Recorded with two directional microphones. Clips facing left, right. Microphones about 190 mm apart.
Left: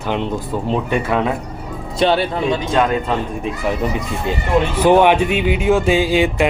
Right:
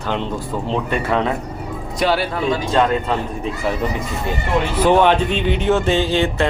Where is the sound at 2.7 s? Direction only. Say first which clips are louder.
Right 1 dB; centre (ahead or behind).